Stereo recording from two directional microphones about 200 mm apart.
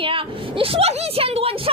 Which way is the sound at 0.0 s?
25° right (ahead or behind).